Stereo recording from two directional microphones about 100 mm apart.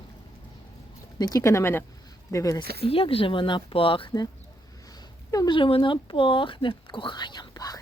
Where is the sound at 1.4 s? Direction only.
25° left (ahead or behind).